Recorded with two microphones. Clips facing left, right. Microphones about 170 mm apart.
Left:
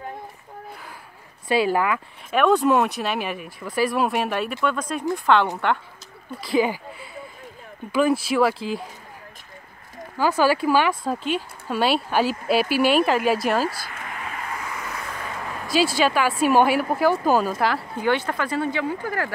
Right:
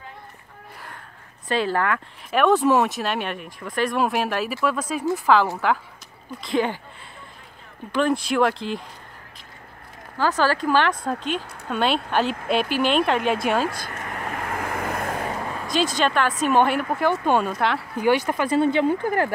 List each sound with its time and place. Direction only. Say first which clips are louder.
1.5 s speech: left 2 dB; 10° left (ahead or behind)
7.9 s speech: left 1 dB; 5° left (ahead or behind)
10.1 s speech: left 2 dB; 10° left (ahead or behind)
13.7 s vehicle: right 1 dB; 50° right (ahead or behind)
15.6 s speech: left 2 dB; 5° left (ahead or behind)
18.0 s speech: right 3 dB; 15° right (ahead or behind)